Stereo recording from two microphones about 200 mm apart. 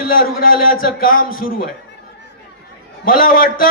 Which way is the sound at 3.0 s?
45° left (ahead or behind).